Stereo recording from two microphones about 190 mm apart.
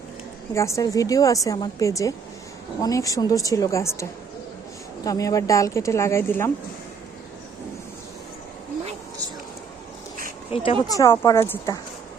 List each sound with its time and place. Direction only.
0.5 s a woman's voice: 15° left (ahead or behind)
5.0 s a woman's voice: 20° left (ahead or behind)
10.5 s speech: 30° left (ahead or behind)
10.9 s a woman's voice: 15° left (ahead or behind)